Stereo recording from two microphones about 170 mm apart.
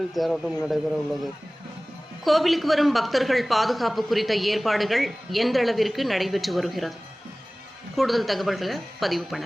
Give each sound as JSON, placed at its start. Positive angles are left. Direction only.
{"t": 0.1, "sound": "a woman's voice", "side_deg": 0}
{"t": 2.2, "sound": "a woman's voice", "side_deg": 0}
{"t": 7.9, "sound": "a woman's voice", "side_deg": 0}